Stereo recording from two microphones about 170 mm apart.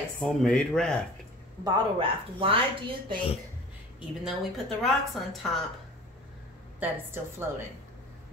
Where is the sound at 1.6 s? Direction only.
30° right (ahead or behind).